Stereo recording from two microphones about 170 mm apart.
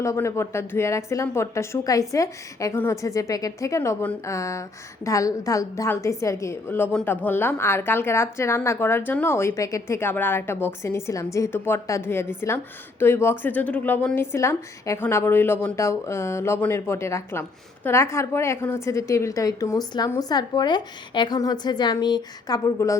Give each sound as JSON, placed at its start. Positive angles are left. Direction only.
{"t": 0.0, "sound": "a woman's voice", "side_deg": 15}